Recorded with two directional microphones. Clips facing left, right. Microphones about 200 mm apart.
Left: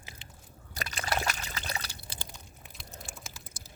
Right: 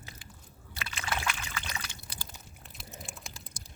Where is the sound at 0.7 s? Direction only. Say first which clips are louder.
Left 3 dB; 40° left (ahead or behind).